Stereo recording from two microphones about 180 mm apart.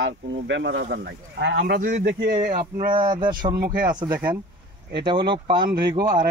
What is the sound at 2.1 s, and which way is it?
Speech, 65° right (ahead or behind).